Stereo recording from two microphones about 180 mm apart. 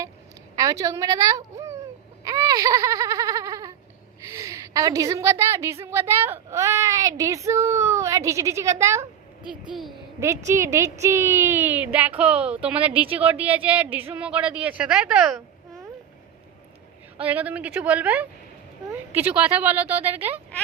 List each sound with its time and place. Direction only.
0.5 s a sound: 20° right (ahead or behind)
2.2 s baby cry: 20° right (ahead or behind)
4.3 s a woman's voice: 15° right (ahead or behind)
10.2 s a woman's voice: 15° right (ahead or behind)
17.2 s a woman's voice: 10° right (ahead or behind)